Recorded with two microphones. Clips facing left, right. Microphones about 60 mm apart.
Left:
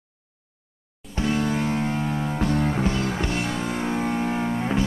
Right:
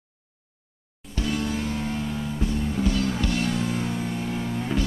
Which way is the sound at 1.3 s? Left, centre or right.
Left.